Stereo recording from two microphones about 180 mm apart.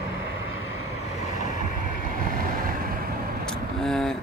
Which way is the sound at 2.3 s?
55° right (ahead or behind).